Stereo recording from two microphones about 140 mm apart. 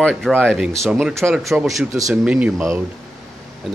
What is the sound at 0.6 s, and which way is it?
Speech, 5° right (ahead or behind).